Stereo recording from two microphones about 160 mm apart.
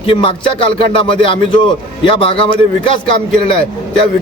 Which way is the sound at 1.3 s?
30° left (ahead or behind).